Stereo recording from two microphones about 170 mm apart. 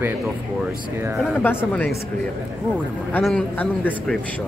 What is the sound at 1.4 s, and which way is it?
Speech, 10° left (ahead or behind).